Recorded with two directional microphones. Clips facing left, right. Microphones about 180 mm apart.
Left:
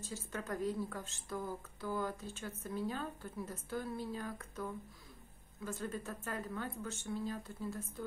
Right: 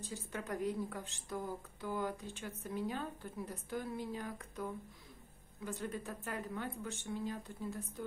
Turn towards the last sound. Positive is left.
turn(degrees=-15)  # may be behind; listen again after turning